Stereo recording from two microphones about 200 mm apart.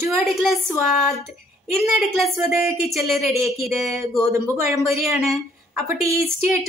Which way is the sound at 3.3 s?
15° right (ahead or behind).